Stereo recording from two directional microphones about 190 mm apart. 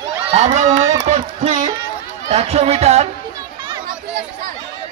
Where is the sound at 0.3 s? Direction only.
35° right (ahead or behind).